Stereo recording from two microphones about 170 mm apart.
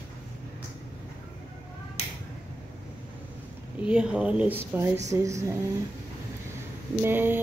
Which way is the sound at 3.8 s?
5° right (ahead or behind).